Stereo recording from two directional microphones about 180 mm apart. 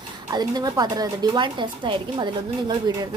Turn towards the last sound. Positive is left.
turn(degrees=-25)  # may be behind; listen again after turning